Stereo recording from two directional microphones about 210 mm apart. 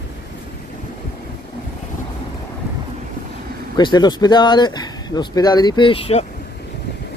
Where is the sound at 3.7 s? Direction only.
20° left (ahead or behind).